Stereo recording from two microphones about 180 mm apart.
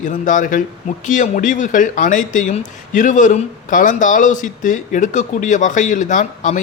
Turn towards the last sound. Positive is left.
turn(degrees=45)  # may be behind; listen again after turning